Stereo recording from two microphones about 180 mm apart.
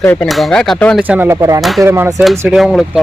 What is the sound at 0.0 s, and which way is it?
Speech, 5° left (ahead or behind).